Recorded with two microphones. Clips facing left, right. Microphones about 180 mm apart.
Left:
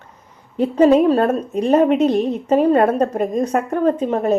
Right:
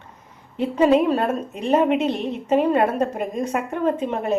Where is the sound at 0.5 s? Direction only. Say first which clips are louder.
Left 4 dB; 40° left (ahead or behind).